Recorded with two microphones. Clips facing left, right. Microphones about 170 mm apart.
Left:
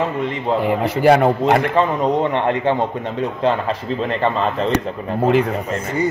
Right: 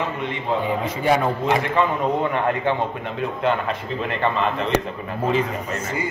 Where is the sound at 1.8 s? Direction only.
30° left (ahead or behind).